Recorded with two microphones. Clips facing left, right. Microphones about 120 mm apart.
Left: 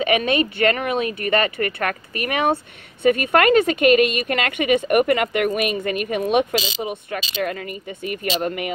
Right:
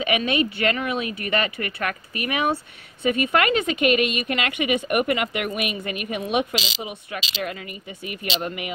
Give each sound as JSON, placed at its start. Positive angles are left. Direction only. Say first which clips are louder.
{"t": 0.0, "sound": "a woman's voice", "louder": "left 3 dB", "side_deg": 40}